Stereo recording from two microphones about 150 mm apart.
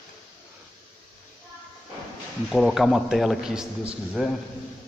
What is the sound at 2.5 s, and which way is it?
A man's voice, centre (ahead or behind).